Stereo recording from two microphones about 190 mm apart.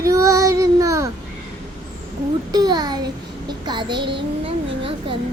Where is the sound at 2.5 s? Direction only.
20° right (ahead or behind).